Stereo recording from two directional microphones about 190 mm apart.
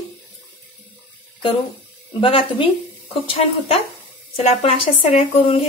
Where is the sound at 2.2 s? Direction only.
25° left (ahead or behind).